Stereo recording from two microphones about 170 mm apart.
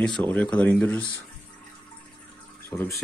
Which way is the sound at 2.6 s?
15° left (ahead or behind).